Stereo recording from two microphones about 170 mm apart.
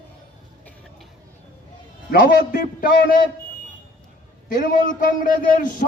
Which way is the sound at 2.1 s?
60° left (ahead or behind).